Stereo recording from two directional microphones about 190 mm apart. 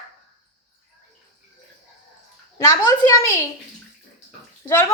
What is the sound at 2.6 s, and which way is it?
Speech, 20° left (ahead or behind).